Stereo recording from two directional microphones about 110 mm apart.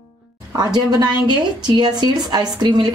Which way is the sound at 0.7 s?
40° right (ahead or behind).